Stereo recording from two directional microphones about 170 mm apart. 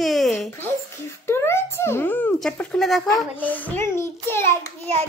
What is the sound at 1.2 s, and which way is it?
A child's voice, 15° left (ahead or behind).